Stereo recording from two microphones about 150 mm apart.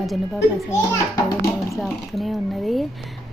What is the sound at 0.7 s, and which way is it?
Speech, 20° left (ahead or behind).